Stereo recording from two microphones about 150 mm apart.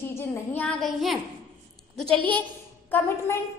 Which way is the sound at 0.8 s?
Centre (ahead or behind).